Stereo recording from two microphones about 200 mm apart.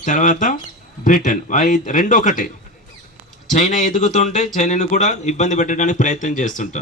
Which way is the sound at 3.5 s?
40° left (ahead or behind).